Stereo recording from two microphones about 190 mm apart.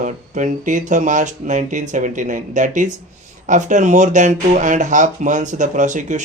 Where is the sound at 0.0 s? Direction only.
40° right (ahead or behind).